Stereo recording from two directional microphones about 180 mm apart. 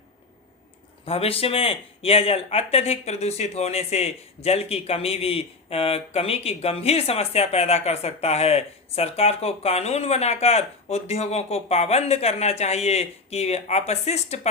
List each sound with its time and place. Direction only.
1.0 s speech: 30° left (ahead or behind)